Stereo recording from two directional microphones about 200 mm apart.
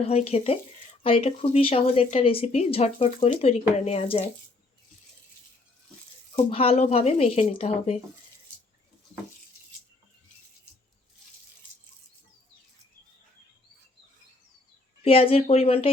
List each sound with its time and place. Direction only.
0.1 s speech: 30° left (ahead or behind)
6.3 s speech: 30° left (ahead or behind)
15.0 s speech: 30° left (ahead or behind)